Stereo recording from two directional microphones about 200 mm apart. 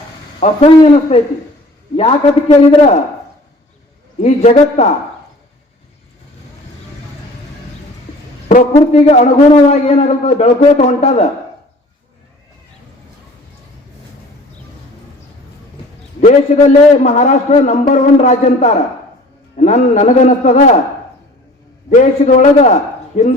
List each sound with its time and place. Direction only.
0.3 s a man's voice: 30° left (ahead or behind)
4.2 s a man's voice: 35° left (ahead or behind)
8.9 s a man's voice: 35° left (ahead or behind)
16.2 s a man's voice: 40° left (ahead or behind)
21.8 s a man's voice: 40° left (ahead or behind)